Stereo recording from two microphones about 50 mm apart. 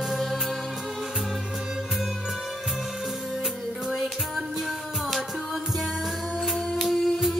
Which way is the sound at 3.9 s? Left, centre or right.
Centre.